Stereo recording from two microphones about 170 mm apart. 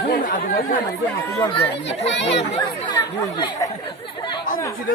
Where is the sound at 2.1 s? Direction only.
90° left.